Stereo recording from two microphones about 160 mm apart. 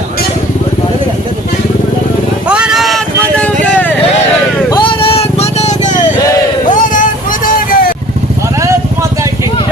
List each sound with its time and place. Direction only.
2.5 s vehicle: 5° right (ahead or behind)
4.8 s vehicle: 35° left (ahead or behind); by 7.9 s 55° left (ahead or behind)